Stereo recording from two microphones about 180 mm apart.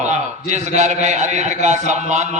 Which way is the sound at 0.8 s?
40° right (ahead or behind).